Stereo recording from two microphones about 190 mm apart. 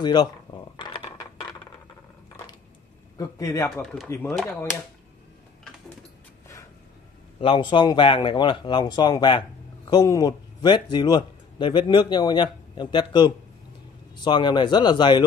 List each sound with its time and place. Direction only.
0.0 s speech: 20° left (ahead or behind)
0.7 s coin: 25° left (ahead or behind)
3.2 s a man's voice: 15° left (ahead or behind)
3.7 s speech: centre (ahead or behind)
4.1 s a man's voice: 15° left (ahead or behind)
7.3 s a man's voice: 25° left (ahead or behind)